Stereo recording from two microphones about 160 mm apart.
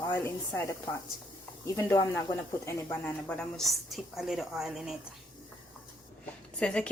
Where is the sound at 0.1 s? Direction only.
15° left (ahead or behind); by 4.9 s centre (ahead or behind).